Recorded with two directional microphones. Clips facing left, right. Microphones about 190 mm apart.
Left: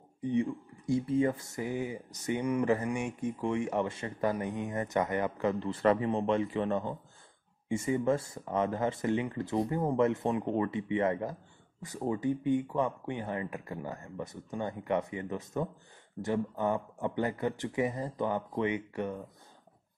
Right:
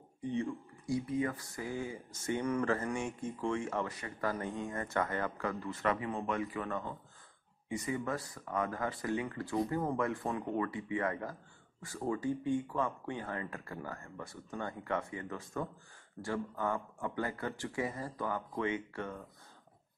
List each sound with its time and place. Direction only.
0.2 s speech: 15° left (ahead or behind)